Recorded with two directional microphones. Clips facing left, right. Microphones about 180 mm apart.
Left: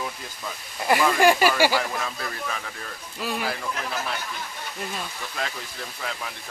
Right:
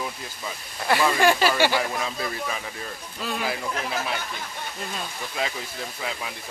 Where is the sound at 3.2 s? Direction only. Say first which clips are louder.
Left 1 dB; 10° left (ahead or behind).